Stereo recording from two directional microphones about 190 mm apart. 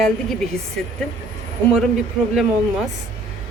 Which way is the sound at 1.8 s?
Centre (ahead or behind).